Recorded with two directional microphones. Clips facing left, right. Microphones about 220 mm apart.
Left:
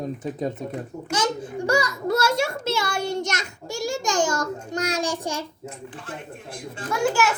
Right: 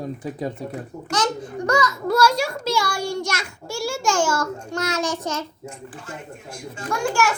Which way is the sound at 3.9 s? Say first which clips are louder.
Right 2 dB; 15° left (ahead or behind).